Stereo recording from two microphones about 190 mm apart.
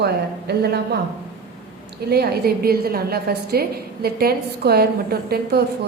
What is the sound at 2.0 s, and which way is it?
A woman's voice, 55° right (ahead or behind).